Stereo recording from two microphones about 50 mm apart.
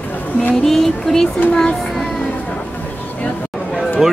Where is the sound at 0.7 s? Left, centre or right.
Centre.